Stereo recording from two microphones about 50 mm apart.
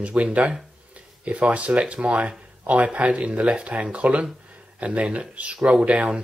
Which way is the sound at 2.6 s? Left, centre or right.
Right.